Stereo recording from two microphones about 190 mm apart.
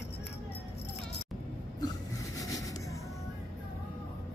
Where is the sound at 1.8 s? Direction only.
20° left (ahead or behind).